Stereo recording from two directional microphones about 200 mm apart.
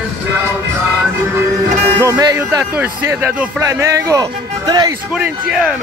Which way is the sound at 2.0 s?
20° right (ahead or behind).